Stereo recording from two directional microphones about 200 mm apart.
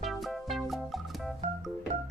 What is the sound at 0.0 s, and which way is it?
Music, centre (ahead or behind).